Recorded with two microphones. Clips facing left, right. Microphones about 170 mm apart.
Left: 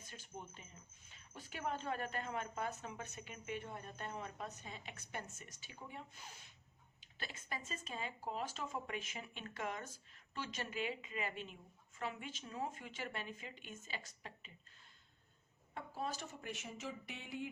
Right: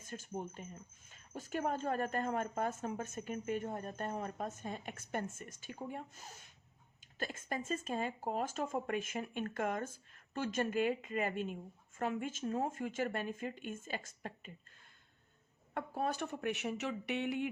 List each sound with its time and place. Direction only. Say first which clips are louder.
0.0 s speech: right 9 dB; 45° right (ahead or behind)
15.7 s speech: right 7 dB; 55° right (ahead or behind)